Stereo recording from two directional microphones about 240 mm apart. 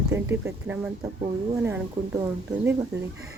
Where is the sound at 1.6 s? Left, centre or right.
Centre.